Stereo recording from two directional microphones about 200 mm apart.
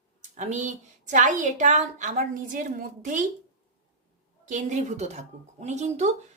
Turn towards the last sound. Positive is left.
turn(degrees=-35)  # may be behind; listen again after turning